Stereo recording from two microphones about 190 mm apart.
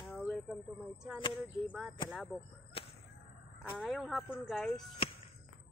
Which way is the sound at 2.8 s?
30° left (ahead or behind).